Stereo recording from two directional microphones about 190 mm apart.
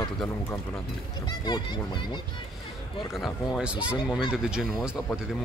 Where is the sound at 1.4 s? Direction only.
20° left (ahead or behind).